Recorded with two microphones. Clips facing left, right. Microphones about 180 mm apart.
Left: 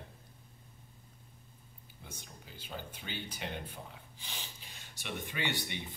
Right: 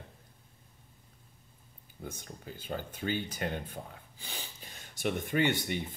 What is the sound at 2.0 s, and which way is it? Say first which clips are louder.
Speech: right 8 dB; 50° right (ahead or behind).